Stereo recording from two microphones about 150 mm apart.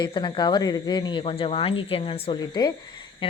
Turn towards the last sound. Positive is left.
turn(degrees=35)  # may be behind; listen again after turning